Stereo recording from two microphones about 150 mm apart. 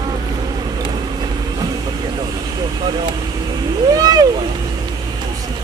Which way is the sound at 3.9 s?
25° right (ahead or behind).